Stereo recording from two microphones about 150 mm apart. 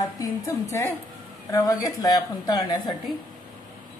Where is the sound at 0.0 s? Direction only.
20° left (ahead or behind).